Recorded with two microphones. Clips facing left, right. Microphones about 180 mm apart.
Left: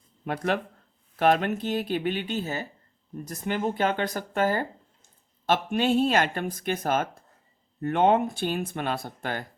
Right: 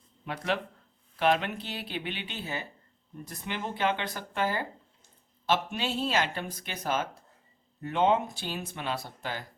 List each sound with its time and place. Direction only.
0.3 s speech: 50° left (ahead or behind)